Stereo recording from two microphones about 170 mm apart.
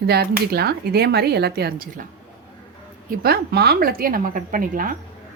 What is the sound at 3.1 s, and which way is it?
Speech, 65° right (ahead or behind).